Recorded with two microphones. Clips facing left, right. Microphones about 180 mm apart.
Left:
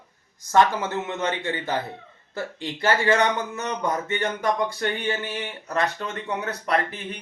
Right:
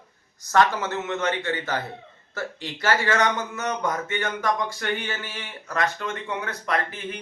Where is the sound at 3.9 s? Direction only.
35° left (ahead or behind).